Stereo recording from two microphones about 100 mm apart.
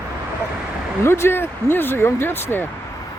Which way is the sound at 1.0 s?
25° left (ahead or behind).